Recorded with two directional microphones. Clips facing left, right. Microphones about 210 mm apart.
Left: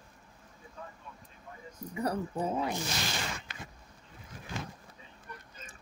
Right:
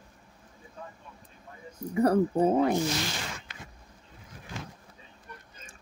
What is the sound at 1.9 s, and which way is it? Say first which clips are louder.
Speech: right 10 dB; 50° right (ahead or behind).